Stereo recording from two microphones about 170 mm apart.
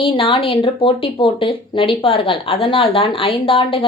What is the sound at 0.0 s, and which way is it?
Speech, 30° left (ahead or behind).